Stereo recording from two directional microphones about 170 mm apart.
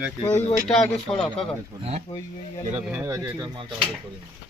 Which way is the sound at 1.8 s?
40° right (ahead or behind).